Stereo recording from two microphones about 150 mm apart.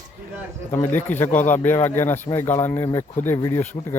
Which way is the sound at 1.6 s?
15° left (ahead or behind).